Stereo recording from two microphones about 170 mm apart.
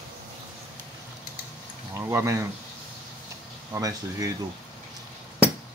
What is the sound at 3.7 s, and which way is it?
Speech, 20° right (ahead or behind).